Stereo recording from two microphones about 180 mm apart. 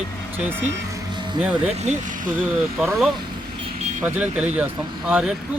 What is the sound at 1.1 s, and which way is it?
Vehicle, 25° right (ahead or behind).